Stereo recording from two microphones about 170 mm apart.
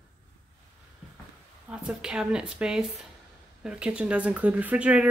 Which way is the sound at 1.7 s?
5° right (ahead or behind).